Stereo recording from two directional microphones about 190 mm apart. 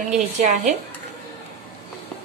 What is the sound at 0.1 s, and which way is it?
Speech, 45° right (ahead or behind).